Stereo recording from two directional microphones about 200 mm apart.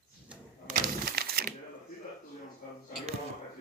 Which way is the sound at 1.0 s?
50° right (ahead or behind).